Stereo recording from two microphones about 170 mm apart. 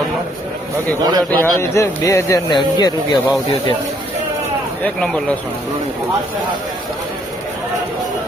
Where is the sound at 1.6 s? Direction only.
15° left (ahead or behind).